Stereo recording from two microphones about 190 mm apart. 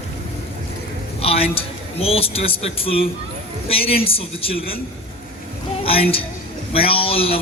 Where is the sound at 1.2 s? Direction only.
30° left (ahead or behind).